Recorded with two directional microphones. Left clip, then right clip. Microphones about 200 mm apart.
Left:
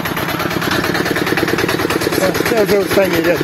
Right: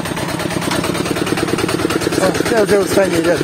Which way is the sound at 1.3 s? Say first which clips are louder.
Left 2 dB; 50° right (ahead or behind).